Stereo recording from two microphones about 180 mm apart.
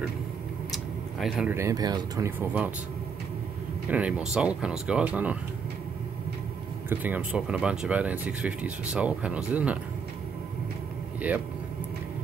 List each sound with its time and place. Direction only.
1.2 s speech: centre (ahead or behind)
1.5 s speech: 15° right (ahead or behind)
3.9 s speech: 5° right (ahead or behind)
6.9 s speech: 10° right (ahead or behind)
11.3 s speech: 5° right (ahead or behind)